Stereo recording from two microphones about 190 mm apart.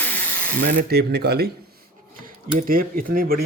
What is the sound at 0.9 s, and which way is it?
Speech, 60° right (ahead or behind).